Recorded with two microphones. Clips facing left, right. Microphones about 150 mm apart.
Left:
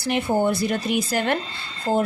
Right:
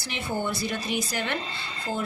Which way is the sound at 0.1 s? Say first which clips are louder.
Left 9 dB; 50° left (ahead or behind).